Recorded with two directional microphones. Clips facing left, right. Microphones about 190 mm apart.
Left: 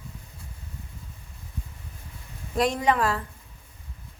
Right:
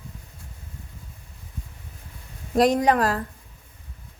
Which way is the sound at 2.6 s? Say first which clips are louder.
Right 4 dB; 40° right (ahead or behind).